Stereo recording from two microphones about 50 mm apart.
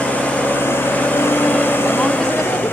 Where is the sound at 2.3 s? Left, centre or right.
Left.